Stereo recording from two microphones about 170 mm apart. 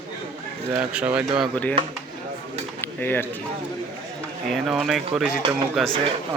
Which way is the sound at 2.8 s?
10° left (ahead or behind).